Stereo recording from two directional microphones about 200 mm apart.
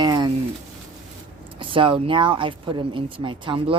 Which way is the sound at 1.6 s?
25° right (ahead or behind).